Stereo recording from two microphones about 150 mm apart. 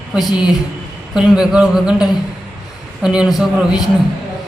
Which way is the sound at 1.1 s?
5° right (ahead or behind).